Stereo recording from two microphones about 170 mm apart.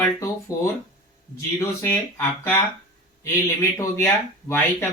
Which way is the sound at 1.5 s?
15° left (ahead or behind).